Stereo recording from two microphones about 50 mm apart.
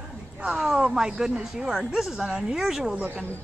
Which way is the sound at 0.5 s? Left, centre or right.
Centre.